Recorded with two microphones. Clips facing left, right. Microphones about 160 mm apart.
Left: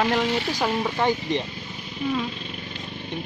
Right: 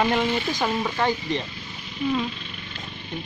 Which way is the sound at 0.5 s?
5° left (ahead or behind).